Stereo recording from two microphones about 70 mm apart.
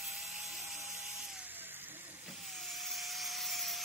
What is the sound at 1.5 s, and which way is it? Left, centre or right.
Vehicle, right.